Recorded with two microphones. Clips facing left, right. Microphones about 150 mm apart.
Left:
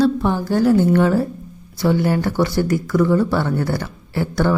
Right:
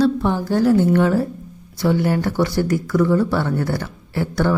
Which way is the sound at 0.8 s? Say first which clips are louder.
Left 1 dB; 35° left (ahead or behind).